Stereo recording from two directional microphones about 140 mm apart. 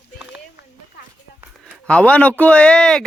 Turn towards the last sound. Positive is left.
turn(degrees=5)  # may be behind; listen again after turning